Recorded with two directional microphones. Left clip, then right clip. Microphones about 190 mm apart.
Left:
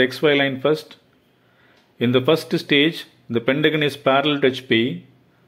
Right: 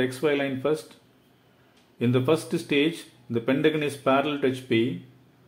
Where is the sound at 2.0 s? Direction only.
15° left (ahead or behind).